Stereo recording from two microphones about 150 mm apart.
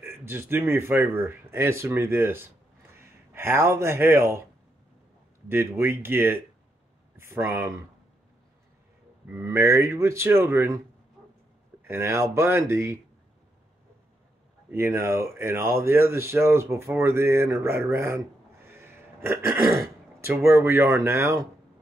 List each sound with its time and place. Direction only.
0.0 s speech: 15° right (ahead or behind)
5.5 s speech: 15° right (ahead or behind)
9.3 s speech: 15° right (ahead or behind)
11.9 s speech: 20° right (ahead or behind)
14.7 s speech: 15° right (ahead or behind)
18.7 s a sound: 15° right (ahead or behind)
20.5 s speech: 15° right (ahead or behind)